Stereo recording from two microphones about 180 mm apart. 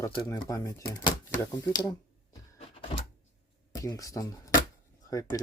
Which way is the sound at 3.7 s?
20° left (ahead or behind).